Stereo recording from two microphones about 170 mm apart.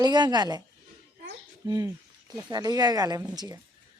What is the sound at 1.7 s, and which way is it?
A woman's voice, 20° right (ahead or behind).